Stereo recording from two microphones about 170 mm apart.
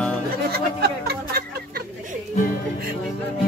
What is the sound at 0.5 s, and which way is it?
Speech, 65° right (ahead or behind).